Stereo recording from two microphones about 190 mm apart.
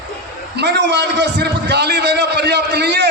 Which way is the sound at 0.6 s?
65° right (ahead or behind).